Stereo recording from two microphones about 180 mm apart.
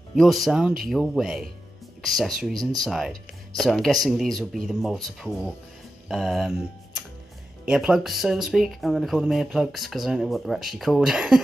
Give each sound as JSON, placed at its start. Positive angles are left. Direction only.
{"t": 0.1, "sound": "speech", "side_deg": 0}
{"t": 2.5, "sound": "speech", "side_deg": -20}
{"t": 2.8, "sound": "speech", "side_deg": 0}
{"t": 7.6, "sound": "speech", "side_deg": -5}